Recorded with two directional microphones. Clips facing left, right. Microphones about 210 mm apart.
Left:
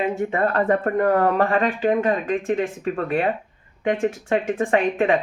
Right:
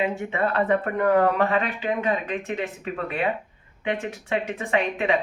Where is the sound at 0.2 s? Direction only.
45° left (ahead or behind).